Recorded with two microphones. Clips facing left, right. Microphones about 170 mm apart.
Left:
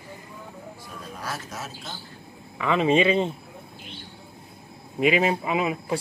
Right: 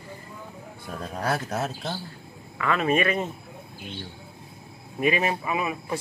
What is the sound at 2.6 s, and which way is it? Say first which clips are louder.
Speech: left 3 dB; 20° left (ahead or behind).